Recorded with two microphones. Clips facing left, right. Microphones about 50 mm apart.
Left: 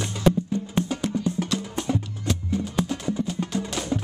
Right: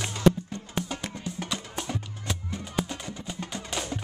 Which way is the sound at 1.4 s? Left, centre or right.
Centre.